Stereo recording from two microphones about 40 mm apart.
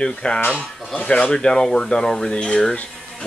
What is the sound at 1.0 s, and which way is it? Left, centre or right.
Speech, left.